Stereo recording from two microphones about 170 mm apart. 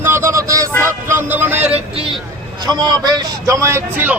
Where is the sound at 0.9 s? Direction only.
15° right (ahead or behind).